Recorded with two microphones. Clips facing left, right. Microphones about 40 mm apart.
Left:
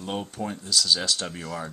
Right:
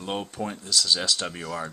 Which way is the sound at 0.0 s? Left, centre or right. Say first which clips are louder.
Right 1 dB; centre.